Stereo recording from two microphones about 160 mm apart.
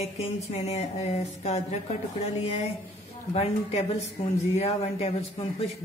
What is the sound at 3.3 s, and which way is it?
A woman's voice, 40° left (ahead or behind).